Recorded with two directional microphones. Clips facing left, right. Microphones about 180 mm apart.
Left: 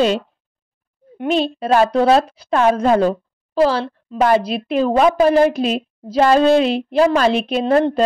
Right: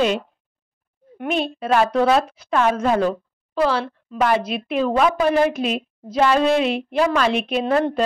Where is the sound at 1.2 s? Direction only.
30° left (ahead or behind).